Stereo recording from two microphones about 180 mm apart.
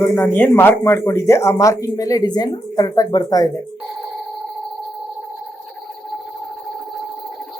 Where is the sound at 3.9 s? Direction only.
Centre (ahead or behind).